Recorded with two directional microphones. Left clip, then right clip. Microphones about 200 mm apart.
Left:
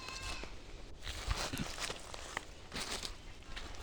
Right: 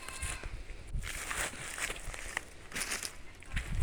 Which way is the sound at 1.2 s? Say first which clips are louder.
Right 4 dB; 10° right (ahead or behind).